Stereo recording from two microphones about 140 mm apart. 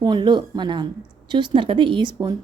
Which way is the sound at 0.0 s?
30° right (ahead or behind).